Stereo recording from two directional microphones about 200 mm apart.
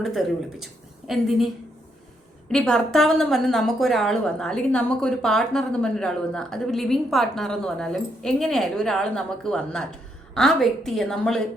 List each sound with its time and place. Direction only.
0.0 s a woman's voice: centre (ahead or behind)
2.5 s a woman's voice: 5° left (ahead or behind)